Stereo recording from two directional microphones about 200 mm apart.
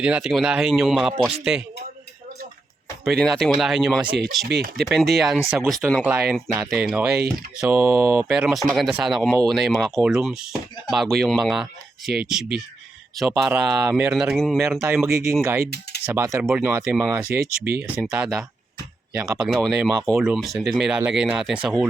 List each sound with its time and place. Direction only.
0.0 s speech: 5° right (ahead or behind)
3.0 s speech: centre (ahead or behind)
4.4 s speech: 50° right (ahead or behind)
4.8 s speech: centre (ahead or behind)
12.0 s speech: 50° right (ahead or behind)
13.1 s speech: centre (ahead or behind)
14.8 s speech: 10° right (ahead or behind)